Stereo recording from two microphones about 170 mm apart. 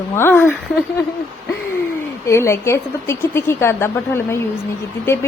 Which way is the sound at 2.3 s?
15° left (ahead or behind).